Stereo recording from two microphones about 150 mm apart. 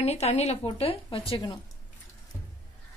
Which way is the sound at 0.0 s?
45° left (ahead or behind).